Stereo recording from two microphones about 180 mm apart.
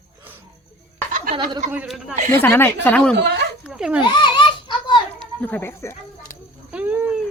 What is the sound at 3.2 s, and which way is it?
Speech, 70° right (ahead or behind).